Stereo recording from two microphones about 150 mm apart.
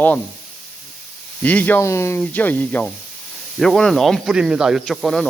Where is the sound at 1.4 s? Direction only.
10° left (ahead or behind).